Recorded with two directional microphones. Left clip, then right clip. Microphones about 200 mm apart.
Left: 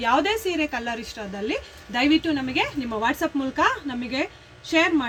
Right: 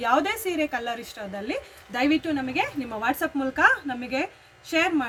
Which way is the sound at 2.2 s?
20° right (ahead or behind).